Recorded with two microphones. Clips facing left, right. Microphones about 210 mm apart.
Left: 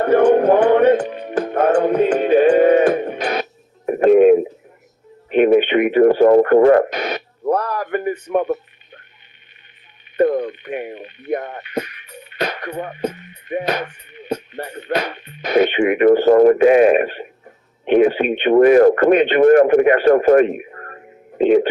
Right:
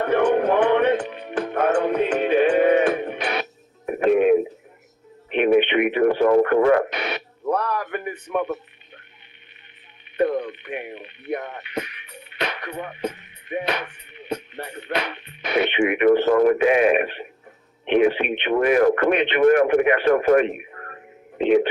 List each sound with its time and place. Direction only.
0.0 s music: 40° left (ahead or behind)
3.8 s radio: 40° left (ahead or behind)
10.2 s speech: 40° left (ahead or behind)